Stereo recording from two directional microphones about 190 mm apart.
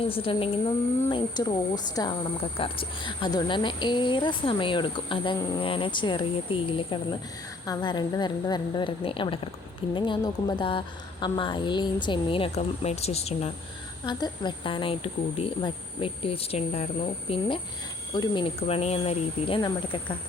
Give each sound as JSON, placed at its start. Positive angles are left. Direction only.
{"t": 0.0, "sound": "speech", "side_deg": 30}
{"t": 14.0, "sound": "speech", "side_deg": 20}